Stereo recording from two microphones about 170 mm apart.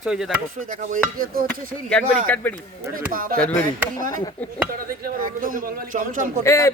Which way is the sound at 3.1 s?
55° right (ahead or behind).